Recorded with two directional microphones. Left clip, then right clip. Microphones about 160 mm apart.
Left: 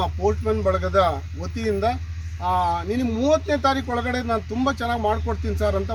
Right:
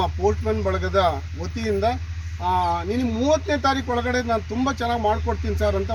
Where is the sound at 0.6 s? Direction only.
10° right (ahead or behind).